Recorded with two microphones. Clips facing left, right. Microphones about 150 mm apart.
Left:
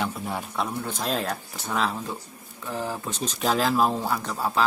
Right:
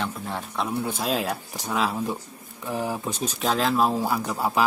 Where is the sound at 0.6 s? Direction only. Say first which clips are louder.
Right 3 dB; 5° right (ahead or behind).